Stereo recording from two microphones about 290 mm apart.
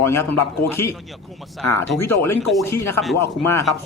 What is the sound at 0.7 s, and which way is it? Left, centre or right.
A man's voice, centre.